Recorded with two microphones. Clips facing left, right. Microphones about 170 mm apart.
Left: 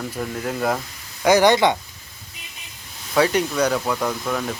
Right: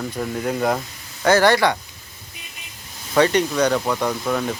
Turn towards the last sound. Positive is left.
turn(degrees=0)  # may be behind; listen again after turning